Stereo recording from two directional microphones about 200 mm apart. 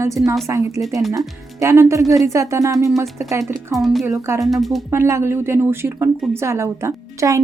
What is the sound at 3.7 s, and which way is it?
Speech, centre (ahead or behind).